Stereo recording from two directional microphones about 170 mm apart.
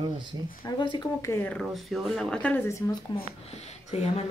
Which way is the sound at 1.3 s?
10° left (ahead or behind).